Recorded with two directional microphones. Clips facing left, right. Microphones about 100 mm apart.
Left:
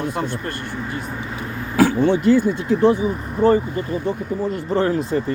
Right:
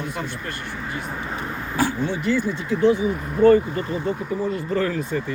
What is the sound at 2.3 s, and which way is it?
Speech, 50° left (ahead or behind).